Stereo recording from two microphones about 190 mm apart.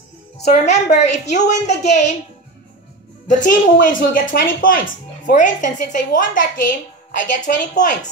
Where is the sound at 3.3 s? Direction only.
45° left (ahead or behind).